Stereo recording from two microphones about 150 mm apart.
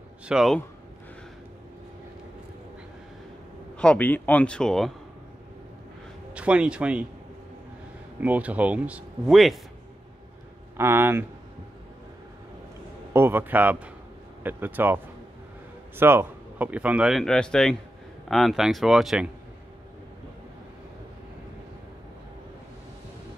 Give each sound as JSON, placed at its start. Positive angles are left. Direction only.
{"t": 0.3, "sound": "speech", "side_deg": -5}
{"t": 3.7, "sound": "a man's voice", "side_deg": 5}
{"t": 6.3, "sound": "speech", "side_deg": -10}
{"t": 8.2, "sound": "speech", "side_deg": -10}
{"t": 10.8, "sound": "speech", "side_deg": -15}
{"t": 13.1, "sound": "speech", "side_deg": -15}
{"t": 16.0, "sound": "speech", "side_deg": -15}